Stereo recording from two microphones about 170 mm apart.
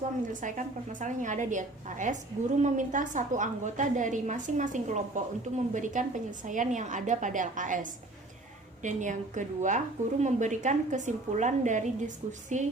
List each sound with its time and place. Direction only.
0.4 s a woman's voice: 50° right (ahead or behind)